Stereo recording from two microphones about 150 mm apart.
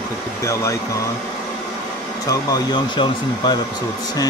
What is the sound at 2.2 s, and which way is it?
Speech, 30° left (ahead or behind).